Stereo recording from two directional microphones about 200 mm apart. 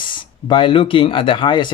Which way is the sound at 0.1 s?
25° left (ahead or behind).